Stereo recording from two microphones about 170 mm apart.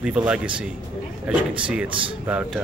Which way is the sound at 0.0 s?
5° right (ahead or behind).